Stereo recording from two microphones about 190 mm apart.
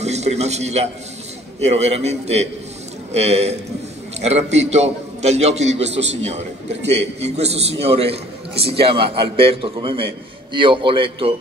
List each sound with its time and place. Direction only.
0.0 s a man's voice: 35° right (ahead or behind)